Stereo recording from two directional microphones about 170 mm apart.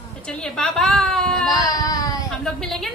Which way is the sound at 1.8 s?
20° left (ahead or behind).